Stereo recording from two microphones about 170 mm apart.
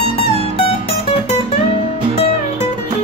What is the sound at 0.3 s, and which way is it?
Music, 35° left (ahead or behind).